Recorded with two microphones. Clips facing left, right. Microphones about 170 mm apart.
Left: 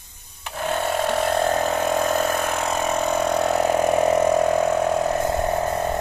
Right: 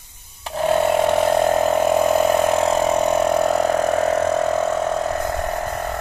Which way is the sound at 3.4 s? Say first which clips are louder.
Right 2 dB; centre (ahead or behind).